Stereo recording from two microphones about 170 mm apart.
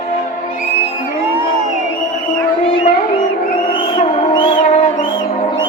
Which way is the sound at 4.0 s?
30° left (ahead or behind).